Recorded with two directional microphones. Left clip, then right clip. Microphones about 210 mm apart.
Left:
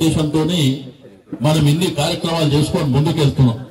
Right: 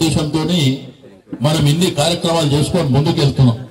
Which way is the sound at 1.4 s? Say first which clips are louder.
Right 1 dB; 45° right (ahead or behind).